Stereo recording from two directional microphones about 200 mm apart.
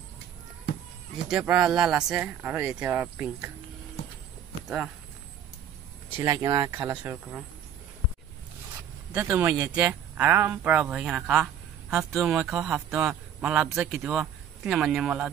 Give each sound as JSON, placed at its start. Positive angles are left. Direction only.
{"t": 1.3, "sound": "speech", "side_deg": -5}
{"t": 4.6, "sound": "speech", "side_deg": -5}
{"t": 6.2, "sound": "speech", "side_deg": -15}
{"t": 9.1, "sound": "a man's voice", "side_deg": -10}